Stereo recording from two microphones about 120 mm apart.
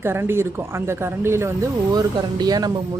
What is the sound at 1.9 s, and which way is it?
Speech, 35° right (ahead or behind).